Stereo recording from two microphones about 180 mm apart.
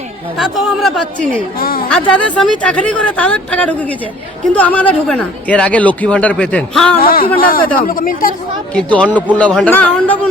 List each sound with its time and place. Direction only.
0.3 s speech: centre (ahead or behind)
1.5 s a sound: 55° left (ahead or behind)
2.4 s speech: 5° left (ahead or behind)
7.0 s speech: 55° left (ahead or behind)
8.7 s speech: 5° left (ahead or behind)
9.0 s speech: 10° right (ahead or behind)
9.3 s speech: 5° left (ahead or behind)